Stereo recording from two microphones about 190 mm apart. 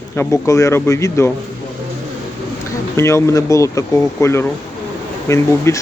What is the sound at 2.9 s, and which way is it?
Speech, 15° left (ahead or behind).